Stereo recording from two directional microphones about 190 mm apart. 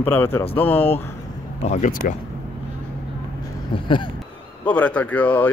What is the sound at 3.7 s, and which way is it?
Speech, 25° left (ahead or behind).